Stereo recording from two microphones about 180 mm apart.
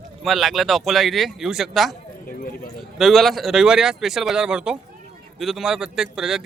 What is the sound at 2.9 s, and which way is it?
A man's voice, centre (ahead or behind).